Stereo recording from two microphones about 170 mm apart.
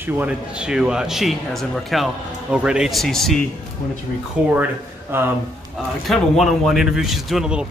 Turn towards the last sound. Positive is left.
turn(degrees=-5)  # may be behind; listen again after turning